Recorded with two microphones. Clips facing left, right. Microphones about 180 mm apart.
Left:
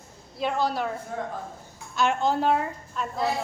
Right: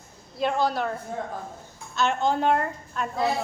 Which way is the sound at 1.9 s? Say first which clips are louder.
Even; 10° left (ahead or behind).